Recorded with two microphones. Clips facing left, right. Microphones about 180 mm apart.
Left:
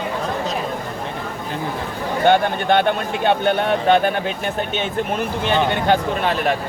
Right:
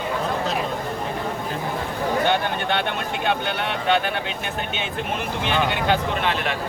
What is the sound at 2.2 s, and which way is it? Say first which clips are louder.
Speech: left 6 dB; 45° left (ahead or behind).